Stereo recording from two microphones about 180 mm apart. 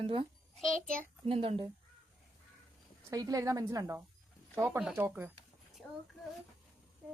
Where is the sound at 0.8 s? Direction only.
50° right (ahead or behind).